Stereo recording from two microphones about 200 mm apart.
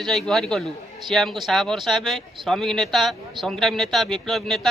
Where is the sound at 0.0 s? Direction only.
Centre (ahead or behind).